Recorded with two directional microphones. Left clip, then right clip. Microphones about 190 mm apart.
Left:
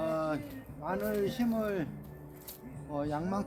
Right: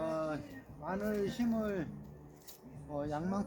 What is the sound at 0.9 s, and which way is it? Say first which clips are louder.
Speech: left 4 dB; 15° left (ahead or behind).